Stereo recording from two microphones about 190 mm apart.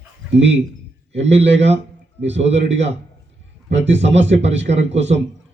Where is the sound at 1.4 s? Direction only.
70° right (ahead or behind).